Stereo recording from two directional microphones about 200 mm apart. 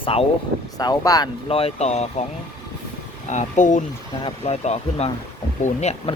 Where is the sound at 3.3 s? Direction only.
35° left (ahead or behind).